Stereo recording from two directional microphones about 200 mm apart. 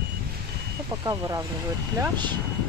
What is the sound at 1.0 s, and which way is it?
Speech, 15° right (ahead or behind).